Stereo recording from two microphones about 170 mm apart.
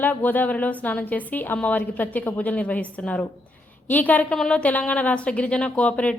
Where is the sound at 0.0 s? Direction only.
10° left (ahead or behind).